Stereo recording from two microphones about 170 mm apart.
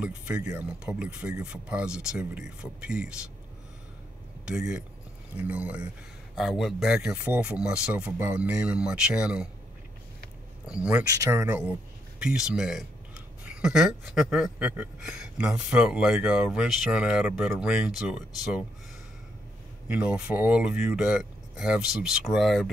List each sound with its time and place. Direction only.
0.0 s speech: 5° right (ahead or behind)
4.5 s speech: 5° right (ahead or behind)
10.7 s speech: 5° right (ahead or behind)
11.1 s speech: 15° right (ahead or behind)
19.9 s speech: 5° right (ahead or behind)